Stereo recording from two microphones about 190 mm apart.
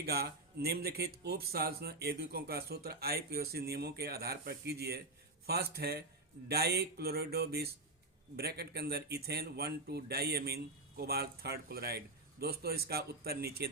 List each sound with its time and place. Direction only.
0.0 s speech: 55° right (ahead or behind)